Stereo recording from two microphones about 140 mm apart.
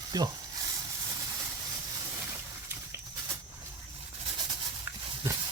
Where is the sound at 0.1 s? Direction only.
25° right (ahead or behind).